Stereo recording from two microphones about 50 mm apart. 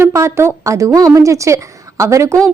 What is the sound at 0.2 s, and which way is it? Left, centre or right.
A woman's voice, right.